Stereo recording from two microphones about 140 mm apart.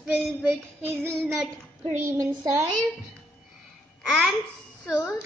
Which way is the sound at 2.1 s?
20° right (ahead or behind).